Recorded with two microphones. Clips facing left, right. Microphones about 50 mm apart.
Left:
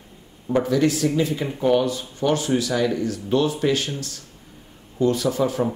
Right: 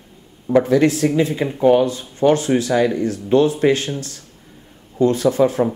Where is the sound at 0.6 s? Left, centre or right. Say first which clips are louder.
Right 4 dB; right.